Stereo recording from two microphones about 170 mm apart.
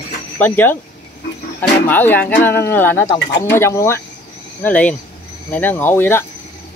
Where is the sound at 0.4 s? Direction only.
10° left (ahead or behind).